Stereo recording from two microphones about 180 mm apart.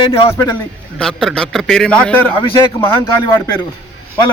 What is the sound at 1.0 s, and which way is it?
A man's voice, 5° left (ahead or behind).